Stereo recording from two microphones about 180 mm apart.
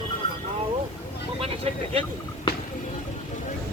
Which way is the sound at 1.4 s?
35° right (ahead or behind).